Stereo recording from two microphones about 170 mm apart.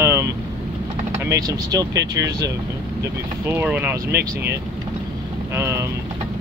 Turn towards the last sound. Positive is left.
turn(degrees=-15)  # may be behind; listen again after turning